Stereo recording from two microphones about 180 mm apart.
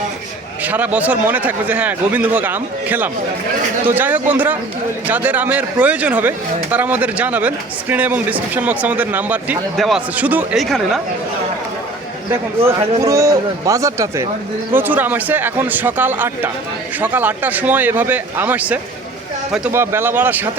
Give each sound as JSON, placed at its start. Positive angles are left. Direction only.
{"t": 0.6, "sound": "a man's voice", "side_deg": -10}
{"t": 12.3, "sound": "a man's voice", "side_deg": -15}